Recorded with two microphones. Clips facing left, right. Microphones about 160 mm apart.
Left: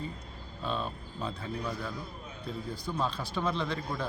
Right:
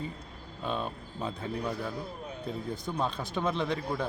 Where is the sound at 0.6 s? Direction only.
15° right (ahead or behind).